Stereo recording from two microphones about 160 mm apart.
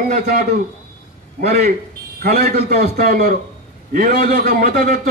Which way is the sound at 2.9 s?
65° right (ahead or behind).